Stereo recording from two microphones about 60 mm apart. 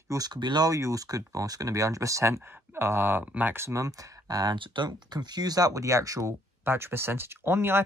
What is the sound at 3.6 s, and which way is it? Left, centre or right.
Speech, right.